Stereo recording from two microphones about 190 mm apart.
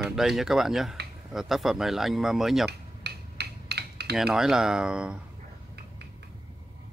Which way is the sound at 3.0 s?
60° right (ahead or behind).